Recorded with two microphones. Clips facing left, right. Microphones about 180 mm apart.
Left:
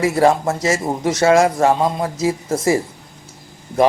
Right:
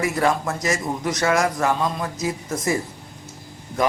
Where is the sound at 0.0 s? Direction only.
25° left (ahead or behind).